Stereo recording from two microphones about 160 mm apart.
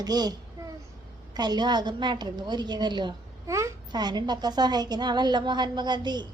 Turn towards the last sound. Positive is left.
turn(degrees=-25)  # may be behind; listen again after turning